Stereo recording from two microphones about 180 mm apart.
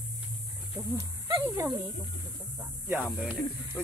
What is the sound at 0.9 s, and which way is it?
Speech, 20° right (ahead or behind).